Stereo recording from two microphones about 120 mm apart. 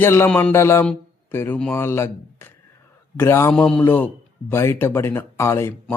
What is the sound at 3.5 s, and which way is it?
A man's voice, 5° left (ahead or behind).